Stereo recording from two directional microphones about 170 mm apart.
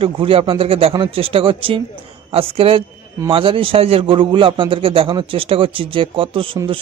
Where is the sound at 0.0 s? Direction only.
35° right (ahead or behind).